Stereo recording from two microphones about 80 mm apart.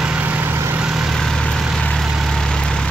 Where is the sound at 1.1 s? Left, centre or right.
Centre.